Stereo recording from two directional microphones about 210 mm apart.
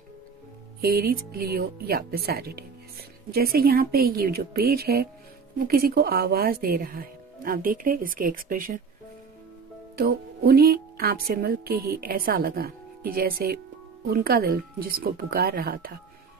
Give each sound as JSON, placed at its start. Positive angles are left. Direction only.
{"t": 0.7, "sound": "speech", "side_deg": -45}
{"t": 9.9, "sound": "speech", "side_deg": -45}